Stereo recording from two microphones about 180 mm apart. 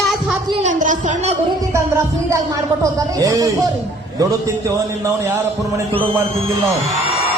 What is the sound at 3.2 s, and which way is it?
Speech, 20° right (ahead or behind).